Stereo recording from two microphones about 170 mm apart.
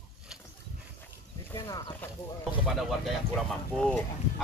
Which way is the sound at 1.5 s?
20° left (ahead or behind).